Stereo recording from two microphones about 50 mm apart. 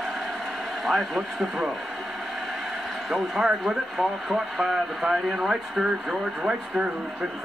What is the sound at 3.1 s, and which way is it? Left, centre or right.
Speech, centre.